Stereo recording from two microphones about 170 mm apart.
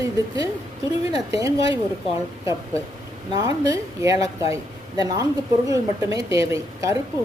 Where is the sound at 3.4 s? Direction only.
20° right (ahead or behind).